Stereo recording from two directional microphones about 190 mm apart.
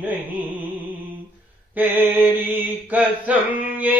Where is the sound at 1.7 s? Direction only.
10° right (ahead or behind).